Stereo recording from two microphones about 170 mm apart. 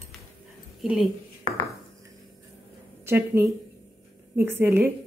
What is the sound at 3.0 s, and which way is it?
Speech, 15° right (ahead or behind).